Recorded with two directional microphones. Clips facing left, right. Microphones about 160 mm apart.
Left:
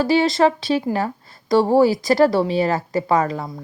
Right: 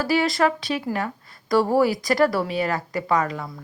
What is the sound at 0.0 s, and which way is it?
Speech, 25° left (ahead or behind).